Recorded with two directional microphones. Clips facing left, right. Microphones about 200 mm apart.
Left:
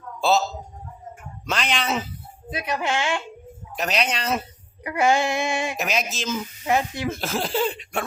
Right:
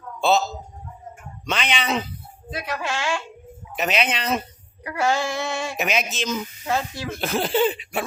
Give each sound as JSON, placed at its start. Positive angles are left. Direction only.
{"t": 0.2, "sound": "a man's voice", "side_deg": 0}
{"t": 1.5, "sound": "speech", "side_deg": 0}
{"t": 2.5, "sound": "speech", "side_deg": 20}
{"t": 3.8, "sound": "speech", "side_deg": 0}
{"t": 4.8, "sound": "female singing", "side_deg": 20}
{"t": 5.7, "sound": "speech", "side_deg": 0}
{"t": 6.7, "sound": "female singing", "side_deg": 15}
{"t": 7.2, "sound": "speech", "side_deg": 0}